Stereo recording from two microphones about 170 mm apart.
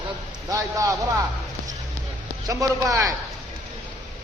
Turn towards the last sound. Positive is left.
turn(degrees=-20)  # may be behind; listen again after turning